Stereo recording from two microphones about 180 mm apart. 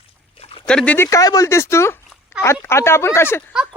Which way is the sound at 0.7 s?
5° left (ahead or behind).